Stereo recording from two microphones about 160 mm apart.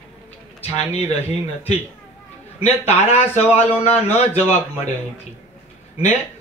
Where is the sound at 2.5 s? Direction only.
40° left (ahead or behind).